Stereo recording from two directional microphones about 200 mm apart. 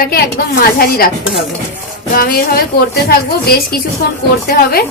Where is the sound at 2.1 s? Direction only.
50° left (ahead or behind).